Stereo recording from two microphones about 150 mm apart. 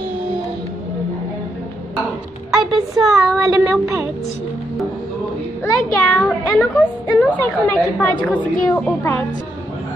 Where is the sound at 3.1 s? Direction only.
Centre (ahead or behind).